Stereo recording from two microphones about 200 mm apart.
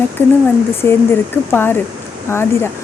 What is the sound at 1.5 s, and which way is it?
Speech, 10° left (ahead or behind).